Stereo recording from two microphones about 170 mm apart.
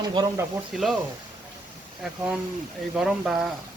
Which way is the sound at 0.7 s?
Centre (ahead or behind).